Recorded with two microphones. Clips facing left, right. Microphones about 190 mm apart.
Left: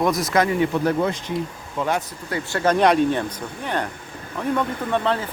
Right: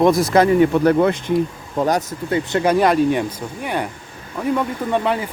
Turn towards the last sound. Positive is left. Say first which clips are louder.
# right 2 dB
turn(degrees=-15)  # may be behind; listen again after turning